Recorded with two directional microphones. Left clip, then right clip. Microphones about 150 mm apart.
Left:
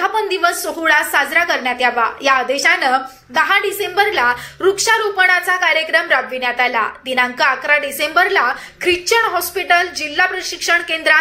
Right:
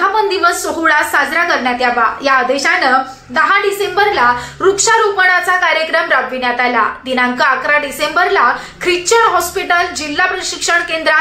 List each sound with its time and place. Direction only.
0.0 s a woman's voice: 10° left (ahead or behind)